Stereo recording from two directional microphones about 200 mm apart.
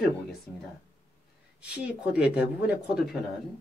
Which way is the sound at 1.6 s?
5° right (ahead or behind).